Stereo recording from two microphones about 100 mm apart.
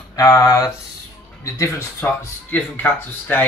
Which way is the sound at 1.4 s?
30° left (ahead or behind).